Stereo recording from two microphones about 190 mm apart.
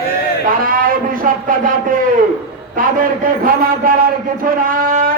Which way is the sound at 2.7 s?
45° right (ahead or behind).